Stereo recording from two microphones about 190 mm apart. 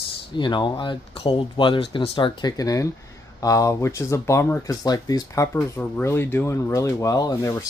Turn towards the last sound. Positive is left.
turn(degrees=15)  # may be behind; listen again after turning